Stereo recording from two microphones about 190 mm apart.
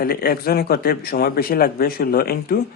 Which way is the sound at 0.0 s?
50° left (ahead or behind).